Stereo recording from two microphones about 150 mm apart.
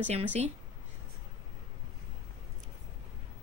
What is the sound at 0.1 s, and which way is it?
Speech, 50° right (ahead or behind).